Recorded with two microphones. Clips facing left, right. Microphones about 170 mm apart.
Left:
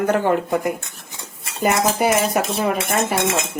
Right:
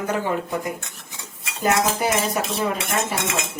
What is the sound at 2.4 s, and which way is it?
Speech, 65° left (ahead or behind).